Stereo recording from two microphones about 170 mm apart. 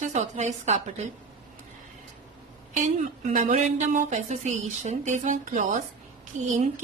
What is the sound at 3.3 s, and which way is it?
Speech, 50° right (ahead or behind).